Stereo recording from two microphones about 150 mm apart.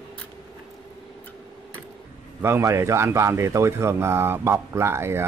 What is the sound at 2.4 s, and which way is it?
A man's voice, 15° right (ahead or behind).